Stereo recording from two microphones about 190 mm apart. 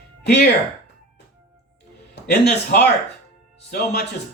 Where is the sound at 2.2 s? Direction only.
60° left (ahead or behind).